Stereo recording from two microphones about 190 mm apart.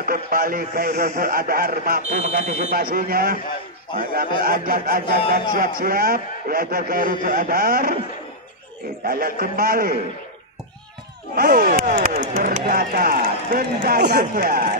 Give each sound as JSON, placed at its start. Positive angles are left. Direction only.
{"t": 0.0, "sound": "speech", "side_deg": -50}
{"t": 9.0, "sound": "speech", "side_deg": -50}
{"t": 11.3, "sound": "speech", "side_deg": -50}